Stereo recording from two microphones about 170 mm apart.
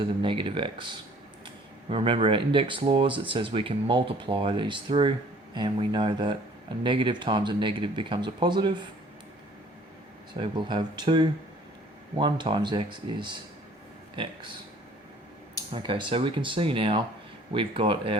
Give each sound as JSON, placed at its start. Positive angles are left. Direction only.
{"t": 0.0, "sound": "speech", "side_deg": -30}
{"t": 1.9, "sound": "speech", "side_deg": -30}
{"t": 10.4, "sound": "speech", "side_deg": -25}
{"t": 15.7, "sound": "speech", "side_deg": -30}